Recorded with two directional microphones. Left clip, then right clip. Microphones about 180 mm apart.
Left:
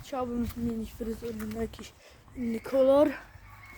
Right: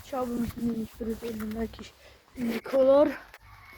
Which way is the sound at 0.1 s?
5° right (ahead or behind).